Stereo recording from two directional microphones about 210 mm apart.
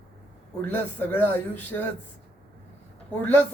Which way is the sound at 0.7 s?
10° left (ahead or behind).